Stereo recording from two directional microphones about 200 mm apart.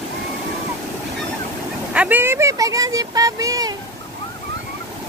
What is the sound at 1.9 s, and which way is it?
Speech, 5° right (ahead or behind).